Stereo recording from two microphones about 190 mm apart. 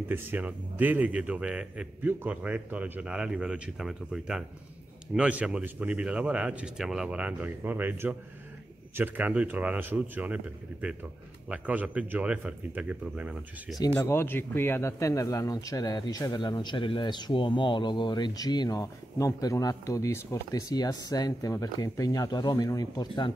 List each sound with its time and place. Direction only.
0.1 s a man's voice: 10° right (ahead or behind)
13.7 s speech: 15° left (ahead or behind)